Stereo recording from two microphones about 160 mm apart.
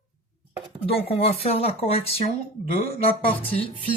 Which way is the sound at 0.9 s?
35° left (ahead or behind).